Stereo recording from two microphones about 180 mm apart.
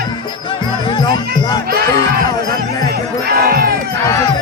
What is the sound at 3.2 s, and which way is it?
Crowd, 60° right (ahead or behind).